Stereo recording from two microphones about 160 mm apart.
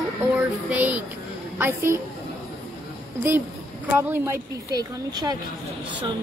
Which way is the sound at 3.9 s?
15° right (ahead or behind).